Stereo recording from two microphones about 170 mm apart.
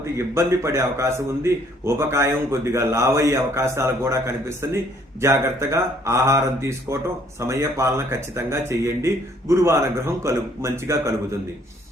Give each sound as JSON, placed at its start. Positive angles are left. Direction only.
{"t": 0.0, "sound": "a man's voice", "side_deg": -15}